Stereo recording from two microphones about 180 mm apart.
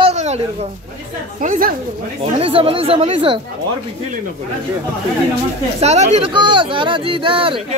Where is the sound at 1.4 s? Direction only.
50° right (ahead or behind).